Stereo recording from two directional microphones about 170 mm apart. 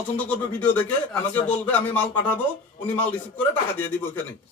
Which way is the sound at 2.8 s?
10° left (ahead or behind).